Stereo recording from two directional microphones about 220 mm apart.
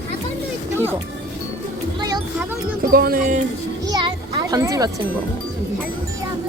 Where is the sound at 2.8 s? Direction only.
40° right (ahead or behind).